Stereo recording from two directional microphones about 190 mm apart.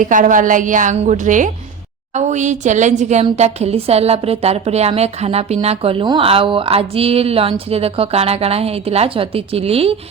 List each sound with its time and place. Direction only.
0.0 s a woman's voice: 45° right (ahead or behind)